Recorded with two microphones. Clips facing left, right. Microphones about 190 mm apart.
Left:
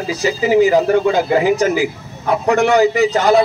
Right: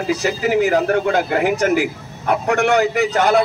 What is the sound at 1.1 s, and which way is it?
Speech, 60° right (ahead or behind).